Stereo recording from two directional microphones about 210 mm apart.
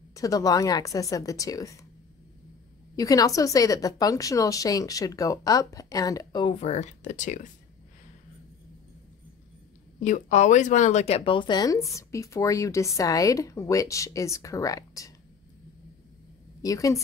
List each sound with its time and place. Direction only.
0.1 s a woman's voice: 15° left (ahead or behind)
3.0 s a woman's voice: 15° left (ahead or behind); by 7.5 s 35° left (ahead or behind)
9.9 s a woman's voice: 35° left (ahead or behind); by 15.1 s 15° left (ahead or behind)
16.6 s a woman's voice: 15° left (ahead or behind)